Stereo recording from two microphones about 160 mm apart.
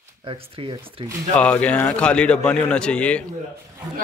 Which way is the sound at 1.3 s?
10° left (ahead or behind).